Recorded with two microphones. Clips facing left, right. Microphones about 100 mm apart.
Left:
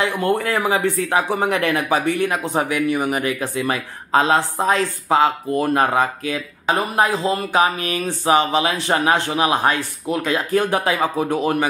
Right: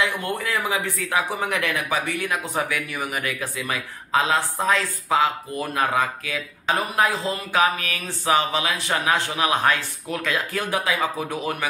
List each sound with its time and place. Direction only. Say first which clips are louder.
0.0 s speech: left 6 dB; 35° left (ahead or behind)
4.4 s speech: left 4 dB; 25° left (ahead or behind)
5.1 s speech: left 5 dB; 40° left (ahead or behind)
7.1 s speech: left 5 dB; 20° left (ahead or behind)
8.9 s a man's voice: left 5 dB; 45° left (ahead or behind)
9.3 s speech: left 3 dB; 25° left (ahead or behind); by 11.2 s 40° left (ahead or behind)